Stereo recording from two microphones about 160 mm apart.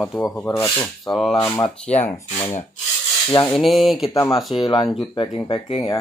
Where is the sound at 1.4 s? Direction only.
10° left (ahead or behind).